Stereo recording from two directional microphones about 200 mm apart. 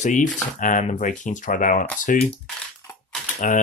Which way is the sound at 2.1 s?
40° left (ahead or behind).